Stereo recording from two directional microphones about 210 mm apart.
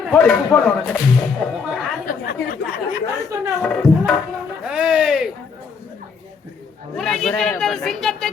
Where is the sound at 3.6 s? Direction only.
5° left (ahead or behind).